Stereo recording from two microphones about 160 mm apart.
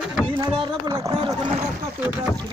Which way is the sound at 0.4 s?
20° right (ahead or behind).